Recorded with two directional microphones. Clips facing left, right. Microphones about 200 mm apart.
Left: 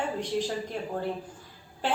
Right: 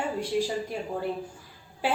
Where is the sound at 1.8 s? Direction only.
10° right (ahead or behind).